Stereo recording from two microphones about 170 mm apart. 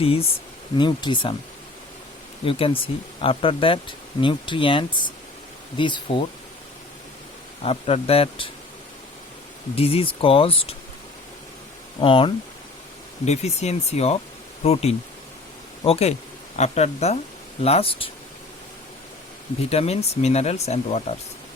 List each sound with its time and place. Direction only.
0.0 s speech: 35° left (ahead or behind)
2.4 s speech: 35° left (ahead or behind)
7.6 s speech: 35° left (ahead or behind)
9.7 s speech: 35° left (ahead or behind)
11.9 s speech: 30° left (ahead or behind)
19.7 s speech: 35° left (ahead or behind)